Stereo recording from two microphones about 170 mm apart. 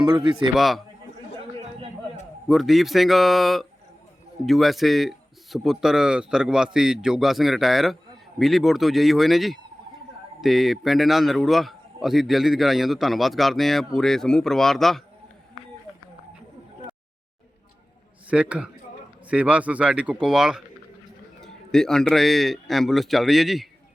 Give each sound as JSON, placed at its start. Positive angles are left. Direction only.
{"t": 0.0, "sound": "speech", "side_deg": -30}
{"t": 0.5, "sound": "a man's voice", "side_deg": 0}
{"t": 2.5, "sound": "a man's voice", "side_deg": 0}
{"t": 18.3, "sound": "a man's voice", "side_deg": -5}